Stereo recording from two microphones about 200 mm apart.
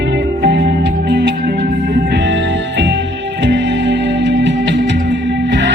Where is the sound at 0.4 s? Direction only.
55° right (ahead or behind).